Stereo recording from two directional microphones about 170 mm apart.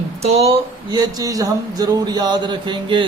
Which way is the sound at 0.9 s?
20° right (ahead or behind).